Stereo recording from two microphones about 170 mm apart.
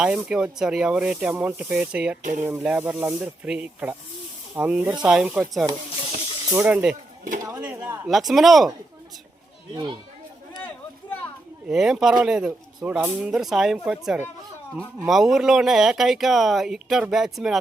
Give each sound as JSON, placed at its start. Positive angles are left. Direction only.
{"t": 0.0, "sound": "speech", "side_deg": -5}
{"t": 9.7, "sound": "speech", "side_deg": -25}
{"t": 11.7, "sound": "speech", "side_deg": 0}